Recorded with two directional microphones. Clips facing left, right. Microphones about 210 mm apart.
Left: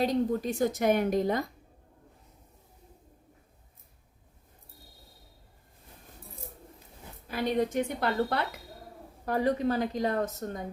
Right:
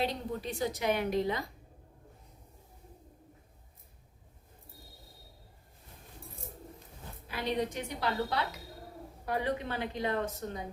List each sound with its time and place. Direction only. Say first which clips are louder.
0.0 s a woman's voice: left 7 dB; 45° left (ahead or behind)
7.3 s a woman's voice: left 5 dB; 45° left (ahead or behind)
9.2 s a woman's voice: left 6 dB; 40° left (ahead or behind)